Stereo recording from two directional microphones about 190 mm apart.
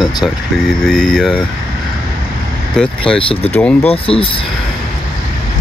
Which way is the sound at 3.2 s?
30° left (ahead or behind).